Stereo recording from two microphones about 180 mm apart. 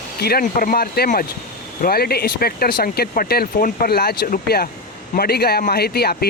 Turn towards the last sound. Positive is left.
turn(degrees=60)  # may be behind; listen again after turning